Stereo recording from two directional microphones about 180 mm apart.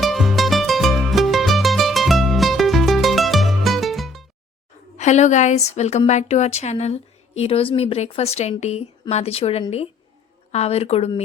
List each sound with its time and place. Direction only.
0.0 s music: centre (ahead or behind)
4.9 s a woman's voice: 40° left (ahead or behind)